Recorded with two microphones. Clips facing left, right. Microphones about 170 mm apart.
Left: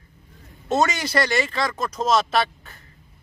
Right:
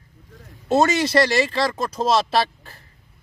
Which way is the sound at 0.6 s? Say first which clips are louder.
Right 4 dB; 30° right (ahead or behind).